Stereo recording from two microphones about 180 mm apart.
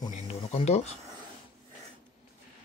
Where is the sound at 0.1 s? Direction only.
35° left (ahead or behind).